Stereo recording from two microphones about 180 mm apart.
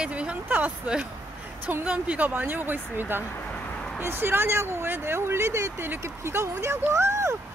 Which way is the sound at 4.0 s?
10° right (ahead or behind).